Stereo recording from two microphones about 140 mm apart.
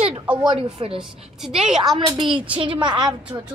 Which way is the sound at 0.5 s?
40° right (ahead or behind).